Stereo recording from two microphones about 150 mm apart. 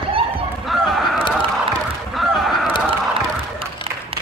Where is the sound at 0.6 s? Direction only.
Centre (ahead or behind).